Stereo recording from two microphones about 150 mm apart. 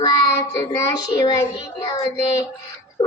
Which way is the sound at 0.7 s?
25° left (ahead or behind).